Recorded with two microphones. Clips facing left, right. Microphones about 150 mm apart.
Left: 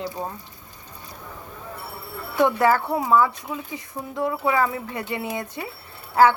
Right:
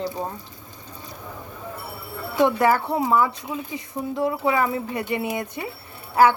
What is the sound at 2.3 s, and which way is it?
A woman's voice, 20° right (ahead or behind).